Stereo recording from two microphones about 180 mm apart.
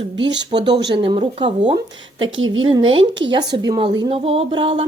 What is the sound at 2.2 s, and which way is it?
Speech, 90° right.